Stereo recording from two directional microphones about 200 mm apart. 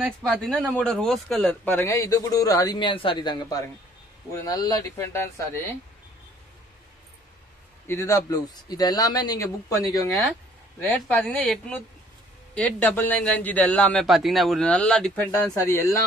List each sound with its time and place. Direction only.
0.0 s speech: 5° left (ahead or behind)
7.8 s a man's voice: 15° left (ahead or behind)